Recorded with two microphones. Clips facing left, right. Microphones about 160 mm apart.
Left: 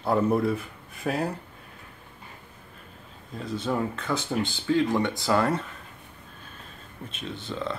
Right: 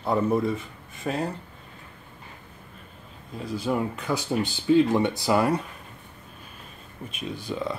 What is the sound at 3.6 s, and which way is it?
Speech, 10° right (ahead or behind).